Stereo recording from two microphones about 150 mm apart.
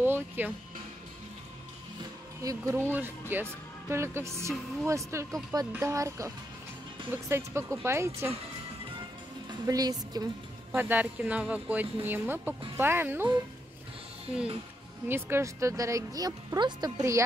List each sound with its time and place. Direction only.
0.0 s music: 15° right (ahead or behind)
2.4 s speech: 20° right (ahead or behind)
9.7 s speech: 25° right (ahead or behind)
10.7 s speech: 10° right (ahead or behind)
15.0 s speech: 15° right (ahead or behind)